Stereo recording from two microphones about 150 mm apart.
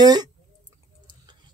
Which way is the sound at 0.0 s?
25° right (ahead or behind).